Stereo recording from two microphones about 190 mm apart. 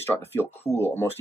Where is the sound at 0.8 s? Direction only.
10° left (ahead or behind).